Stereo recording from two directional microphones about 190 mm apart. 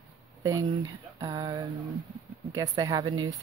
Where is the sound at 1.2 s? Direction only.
20° right (ahead or behind).